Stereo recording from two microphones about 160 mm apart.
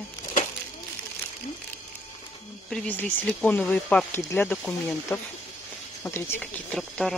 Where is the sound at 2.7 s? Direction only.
10° left (ahead or behind).